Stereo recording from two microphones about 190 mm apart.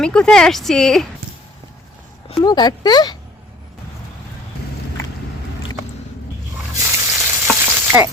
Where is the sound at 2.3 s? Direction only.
20° left (ahead or behind).